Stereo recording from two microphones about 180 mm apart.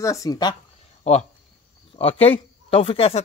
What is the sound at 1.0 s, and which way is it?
Speech, 40° left (ahead or behind).